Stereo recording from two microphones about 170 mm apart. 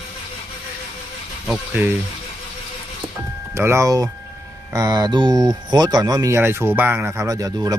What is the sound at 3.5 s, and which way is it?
Speech, 15° right (ahead or behind).